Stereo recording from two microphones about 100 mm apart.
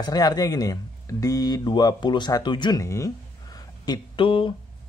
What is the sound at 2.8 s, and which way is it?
Speech, 30° left (ahead or behind).